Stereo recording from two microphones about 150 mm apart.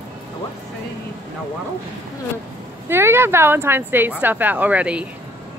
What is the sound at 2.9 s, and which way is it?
Speech, 15° right (ahead or behind).